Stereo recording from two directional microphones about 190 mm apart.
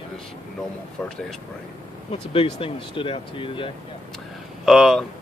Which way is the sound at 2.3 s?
30° left (ahead or behind).